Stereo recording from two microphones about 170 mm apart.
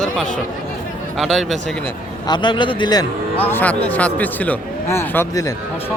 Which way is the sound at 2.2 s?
25° left (ahead or behind).